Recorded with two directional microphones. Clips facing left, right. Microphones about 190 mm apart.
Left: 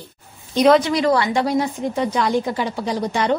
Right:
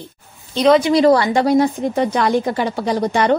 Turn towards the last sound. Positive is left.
turn(degrees=-60)  # may be behind; listen again after turning